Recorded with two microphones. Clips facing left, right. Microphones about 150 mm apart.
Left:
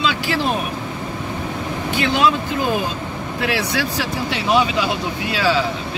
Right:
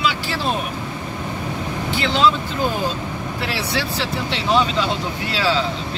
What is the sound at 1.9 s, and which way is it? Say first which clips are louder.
Speech: even; 15° left (ahead or behind).